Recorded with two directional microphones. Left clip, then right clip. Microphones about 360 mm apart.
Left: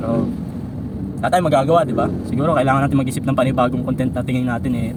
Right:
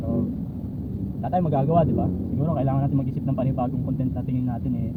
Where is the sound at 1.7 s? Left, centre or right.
Left.